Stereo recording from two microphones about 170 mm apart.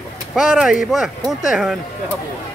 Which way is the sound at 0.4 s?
Centre (ahead or behind).